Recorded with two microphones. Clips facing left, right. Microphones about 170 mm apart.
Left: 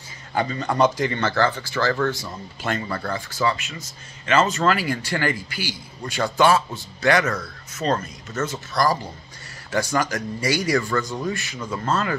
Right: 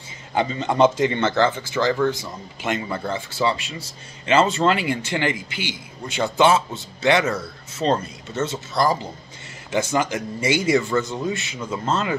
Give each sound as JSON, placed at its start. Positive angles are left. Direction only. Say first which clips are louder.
{"t": 0.3, "sound": "speech", "louder": "right 2 dB", "side_deg": -20}